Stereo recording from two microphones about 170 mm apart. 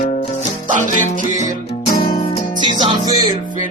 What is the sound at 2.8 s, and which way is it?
Music, 30° right (ahead or behind).